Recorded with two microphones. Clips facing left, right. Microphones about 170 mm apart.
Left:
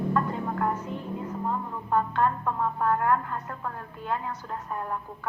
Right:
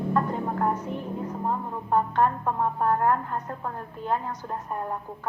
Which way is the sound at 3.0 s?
40° right (ahead or behind).